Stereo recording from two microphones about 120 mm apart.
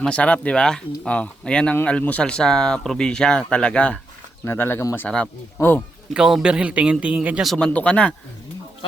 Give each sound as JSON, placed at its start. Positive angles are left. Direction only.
{"t": 0.0, "sound": "speech", "side_deg": 10}
{"t": 4.4, "sound": "speech", "side_deg": 20}
{"t": 5.0, "sound": "speech", "side_deg": 10}
{"t": 6.1, "sound": "a man's voice", "side_deg": -5}
{"t": 7.5, "sound": "speech", "side_deg": 10}